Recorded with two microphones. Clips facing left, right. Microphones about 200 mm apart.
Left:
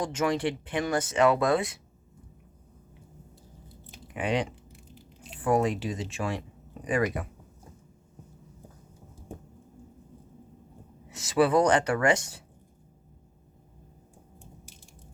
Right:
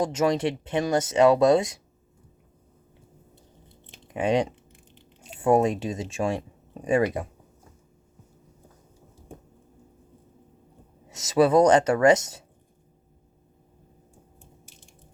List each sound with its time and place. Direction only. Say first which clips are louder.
0.0 s speech: right 4 dB; 25° right (ahead or behind)
4.1 s speech: right 5 dB; 25° right (ahead or behind)
4.9 s a sound: left 5 dB; 5° left (ahead or behind)
5.4 s speech: right 4 dB; 25° right (ahead or behind)
11.1 s speech: right 4 dB; 25° right (ahead or behind)